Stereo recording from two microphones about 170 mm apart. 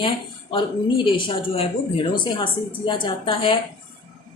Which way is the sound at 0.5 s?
30° left (ahead or behind).